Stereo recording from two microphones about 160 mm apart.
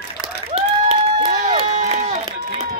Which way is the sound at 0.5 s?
35° right (ahead or behind).